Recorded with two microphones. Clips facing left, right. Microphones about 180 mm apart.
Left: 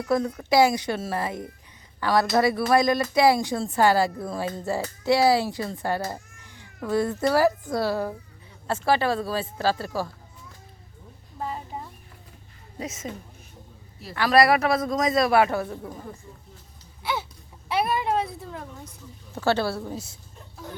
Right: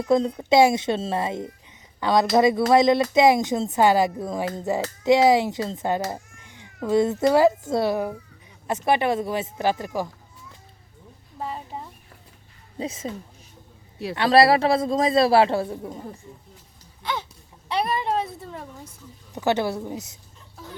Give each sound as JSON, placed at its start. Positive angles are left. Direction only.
{"t": 0.0, "sound": "a child's voice", "side_deg": -25}
{"t": 11.3, "sound": "a sound", "side_deg": 0}
{"t": 12.8, "sound": "a woman's voice", "side_deg": -30}
{"t": 14.2, "sound": "speech", "side_deg": -25}
{"t": 17.0, "sound": "a sound", "side_deg": 10}
{"t": 17.7, "sound": "speech", "side_deg": 5}
{"t": 19.3, "sound": "speech", "side_deg": -15}